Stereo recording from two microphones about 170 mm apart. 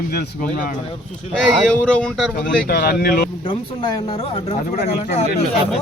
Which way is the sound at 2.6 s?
65° left (ahead or behind).